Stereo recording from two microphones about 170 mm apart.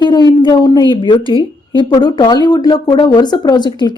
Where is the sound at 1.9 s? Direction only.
25° left (ahead or behind).